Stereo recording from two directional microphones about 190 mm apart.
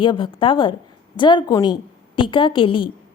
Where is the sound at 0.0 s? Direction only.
25° left (ahead or behind).